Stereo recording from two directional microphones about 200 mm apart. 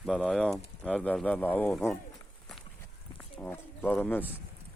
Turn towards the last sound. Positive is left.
turn(degrees=10)  # may be behind; listen again after turning